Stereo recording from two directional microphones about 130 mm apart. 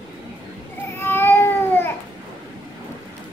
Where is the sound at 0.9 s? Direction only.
20° left (ahead or behind).